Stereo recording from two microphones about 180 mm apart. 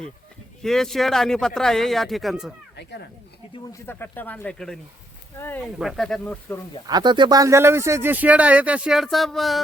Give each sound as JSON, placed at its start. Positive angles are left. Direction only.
{"t": 0.6, "sound": "speech", "side_deg": 0}
{"t": 2.7, "sound": "a sound", "side_deg": 70}
{"t": 3.7, "sound": "speech", "side_deg": 10}
{"t": 5.8, "sound": "speech", "side_deg": 0}
{"t": 6.8, "sound": "speech", "side_deg": -25}